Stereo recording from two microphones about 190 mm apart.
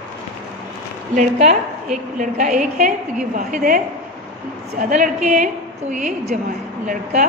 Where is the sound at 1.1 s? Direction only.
40° right (ahead or behind).